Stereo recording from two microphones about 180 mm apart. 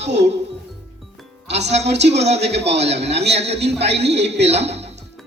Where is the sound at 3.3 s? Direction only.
35° right (ahead or behind).